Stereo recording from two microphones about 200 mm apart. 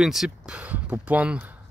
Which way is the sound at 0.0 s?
Centre (ahead or behind).